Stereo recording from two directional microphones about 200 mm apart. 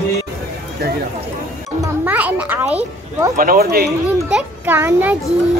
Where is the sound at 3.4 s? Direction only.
50° right (ahead or behind).